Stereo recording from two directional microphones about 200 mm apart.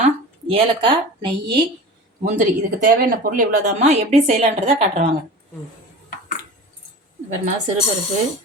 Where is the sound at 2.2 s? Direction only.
45° right (ahead or behind).